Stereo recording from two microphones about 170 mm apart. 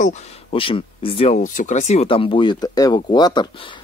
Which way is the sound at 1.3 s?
50° left (ahead or behind).